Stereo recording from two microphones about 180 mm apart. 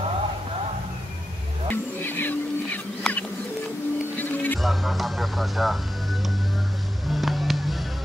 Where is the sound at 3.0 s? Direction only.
10° left (ahead or behind).